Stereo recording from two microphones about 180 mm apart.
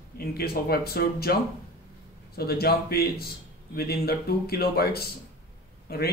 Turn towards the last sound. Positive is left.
turn(degrees=60)  # may be behind; listen again after turning